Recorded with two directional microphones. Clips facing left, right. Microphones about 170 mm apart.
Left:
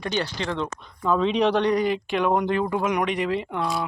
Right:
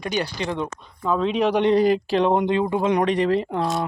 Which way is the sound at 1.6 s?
30° right (ahead or behind).